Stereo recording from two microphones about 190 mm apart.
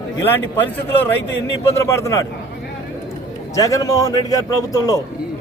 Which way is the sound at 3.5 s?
20° left (ahead or behind).